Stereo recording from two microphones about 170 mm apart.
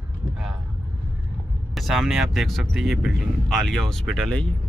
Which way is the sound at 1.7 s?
Centre (ahead or behind).